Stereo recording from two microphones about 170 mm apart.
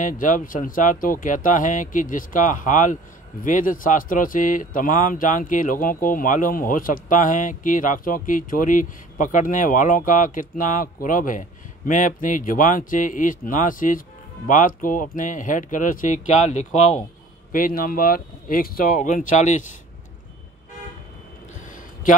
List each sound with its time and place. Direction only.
0.0 s speech: 50° left (ahead or behind)
17.5 s speech: 55° left (ahead or behind)